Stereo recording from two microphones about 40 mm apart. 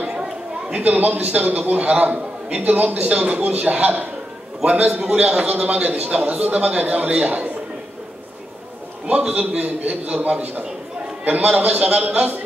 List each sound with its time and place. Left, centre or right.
0.1 s a sound: right
0.7 s a man's voice: right
4.9 s a man's voice: right
9.0 s a man's voice: right
11.2 s a man's voice: right